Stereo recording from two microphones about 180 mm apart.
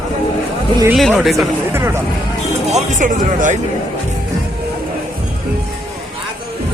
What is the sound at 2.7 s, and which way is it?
Speech, 45° right (ahead or behind).